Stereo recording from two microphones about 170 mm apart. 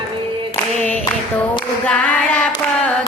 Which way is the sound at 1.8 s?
5° left (ahead or behind).